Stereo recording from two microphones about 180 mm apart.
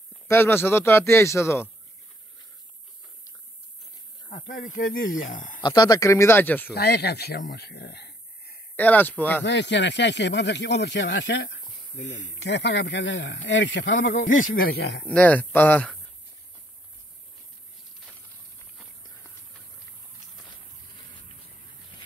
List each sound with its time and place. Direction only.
0.3 s a man's voice: 10° left (ahead or behind)
4.3 s speech: 50° left (ahead or behind)
5.6 s a man's voice: 20° left (ahead or behind)
6.7 s speech: 65° left (ahead or behind)
8.7 s a man's voice: 10° left (ahead or behind)
9.4 s speech: 75° left (ahead or behind)
11.5 s speech: 45° left (ahead or behind)
12.4 s speech: 75° left (ahead or behind)
14.3 s speech: 50° left (ahead or behind); by 15.0 s 65° left (ahead or behind)
15.0 s a man's voice: 10° left (ahead or behind)